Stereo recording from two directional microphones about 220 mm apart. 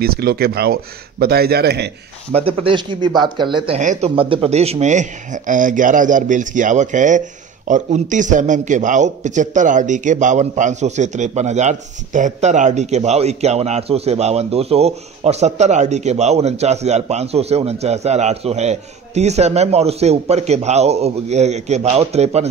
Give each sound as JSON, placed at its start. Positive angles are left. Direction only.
{"t": 0.0, "sound": "speech", "side_deg": -45}
{"t": 2.3, "sound": "speech", "side_deg": -25}